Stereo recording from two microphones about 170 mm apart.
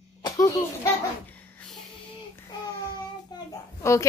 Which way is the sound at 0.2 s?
20° left (ahead or behind).